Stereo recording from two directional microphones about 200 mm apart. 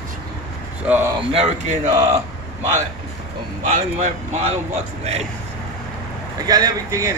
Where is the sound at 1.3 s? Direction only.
30° right (ahead or behind).